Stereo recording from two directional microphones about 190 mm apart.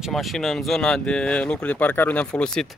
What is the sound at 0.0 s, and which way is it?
Speech, centre (ahead or behind).